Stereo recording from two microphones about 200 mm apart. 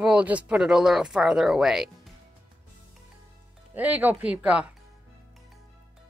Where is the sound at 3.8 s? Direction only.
10° right (ahead or behind).